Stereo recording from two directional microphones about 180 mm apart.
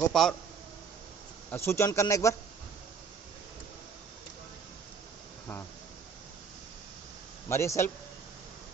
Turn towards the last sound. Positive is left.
turn(degrees=15)  # may be behind; listen again after turning